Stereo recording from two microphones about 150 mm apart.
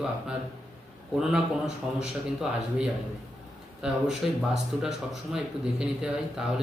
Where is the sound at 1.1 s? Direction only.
5° right (ahead or behind).